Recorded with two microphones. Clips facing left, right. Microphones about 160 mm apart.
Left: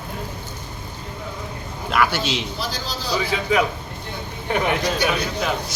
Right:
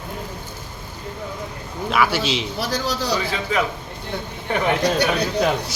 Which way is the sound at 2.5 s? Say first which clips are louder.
Right 5 dB; 70° right (ahead or behind).